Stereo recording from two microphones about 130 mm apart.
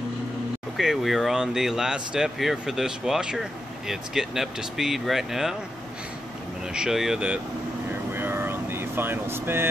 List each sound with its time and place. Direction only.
0.7 s speech: centre (ahead or behind)
6.7 s speech: 5° right (ahead or behind)
8.1 s air conditioning: 15° right (ahead or behind)